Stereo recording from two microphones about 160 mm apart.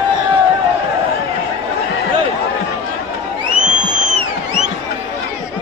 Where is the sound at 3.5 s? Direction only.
50° right (ahead or behind).